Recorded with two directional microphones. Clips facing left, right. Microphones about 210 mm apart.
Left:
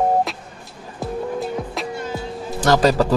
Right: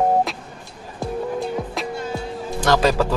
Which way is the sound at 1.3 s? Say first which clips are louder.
Even; centre (ahead or behind).